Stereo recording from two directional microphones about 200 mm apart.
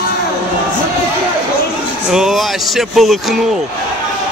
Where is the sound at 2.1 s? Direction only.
Centre (ahead or behind).